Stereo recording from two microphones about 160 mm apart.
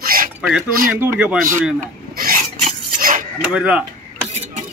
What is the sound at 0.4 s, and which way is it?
Speech, 5° right (ahead or behind).